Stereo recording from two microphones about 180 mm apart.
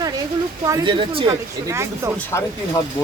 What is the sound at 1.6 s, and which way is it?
Speech, 15° right (ahead or behind).